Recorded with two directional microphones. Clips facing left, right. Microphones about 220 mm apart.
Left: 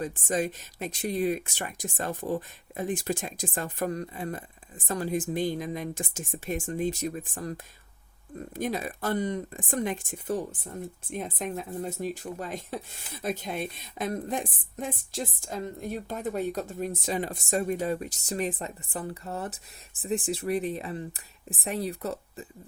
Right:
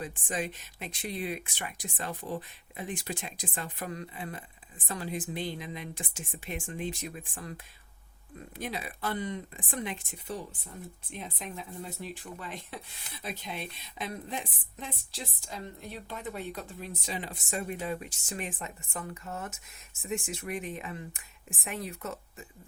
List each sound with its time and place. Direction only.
0.0 s speech: 40° left (ahead or behind)